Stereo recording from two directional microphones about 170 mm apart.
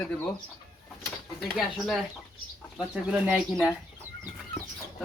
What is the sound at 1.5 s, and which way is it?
Speech, centre (ahead or behind).